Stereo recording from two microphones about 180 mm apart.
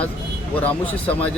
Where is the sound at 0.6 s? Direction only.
10° left (ahead or behind).